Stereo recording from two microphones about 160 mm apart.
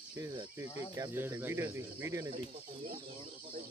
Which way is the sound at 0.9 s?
15° right (ahead or behind).